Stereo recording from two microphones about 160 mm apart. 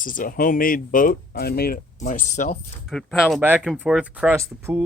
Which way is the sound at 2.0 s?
50° left (ahead or behind).